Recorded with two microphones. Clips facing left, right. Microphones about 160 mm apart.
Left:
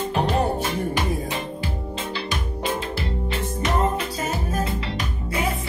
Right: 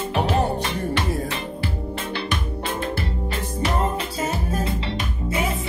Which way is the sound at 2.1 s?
55° right (ahead or behind).